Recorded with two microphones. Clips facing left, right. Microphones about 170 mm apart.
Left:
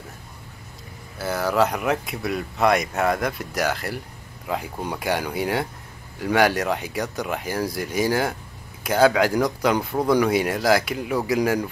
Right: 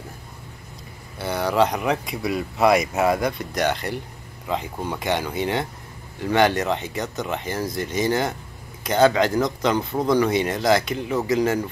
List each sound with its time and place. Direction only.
1.1 s speech: centre (ahead or behind)